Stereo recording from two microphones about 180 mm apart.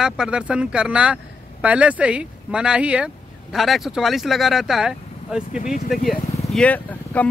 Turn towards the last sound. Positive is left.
turn(degrees=10)  # may be behind; listen again after turning